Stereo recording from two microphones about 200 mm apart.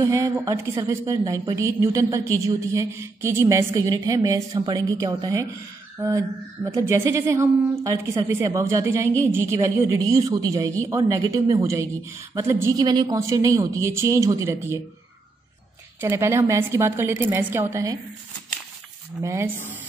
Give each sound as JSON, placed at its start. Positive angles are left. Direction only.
{"t": 0.0, "sound": "a woman's voice", "side_deg": -15}
{"t": 16.0, "sound": "a woman's voice", "side_deg": -15}
{"t": 19.2, "sound": "a woman's voice", "side_deg": -15}